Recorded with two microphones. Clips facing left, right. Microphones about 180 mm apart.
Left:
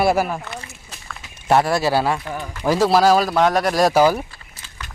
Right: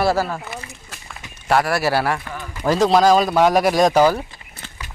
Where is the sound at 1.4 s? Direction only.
25° left (ahead or behind); by 3.4 s 5° left (ahead or behind).